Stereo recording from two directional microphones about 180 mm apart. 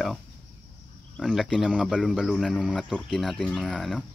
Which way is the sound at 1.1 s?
Centre (ahead or behind).